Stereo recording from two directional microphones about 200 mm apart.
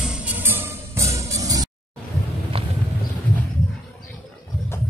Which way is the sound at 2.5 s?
30° right (ahead or behind).